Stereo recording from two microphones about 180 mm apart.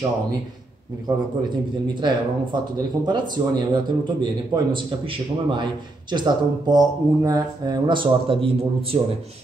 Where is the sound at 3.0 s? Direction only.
25° right (ahead or behind).